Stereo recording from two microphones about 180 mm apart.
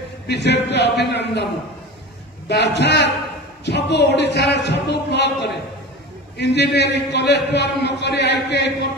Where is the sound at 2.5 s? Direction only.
70° left (ahead or behind).